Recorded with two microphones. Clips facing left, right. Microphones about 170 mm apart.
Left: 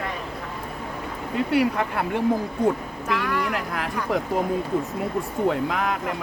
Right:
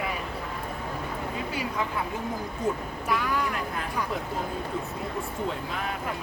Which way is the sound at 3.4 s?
75° left (ahead or behind).